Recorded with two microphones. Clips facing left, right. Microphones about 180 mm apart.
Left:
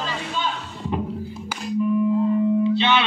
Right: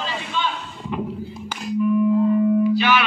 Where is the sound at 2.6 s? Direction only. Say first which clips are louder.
Right 1 dB; 25° left (ahead or behind).